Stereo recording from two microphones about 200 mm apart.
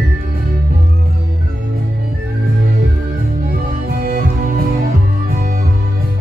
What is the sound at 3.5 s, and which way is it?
Music, 50° right (ahead or behind).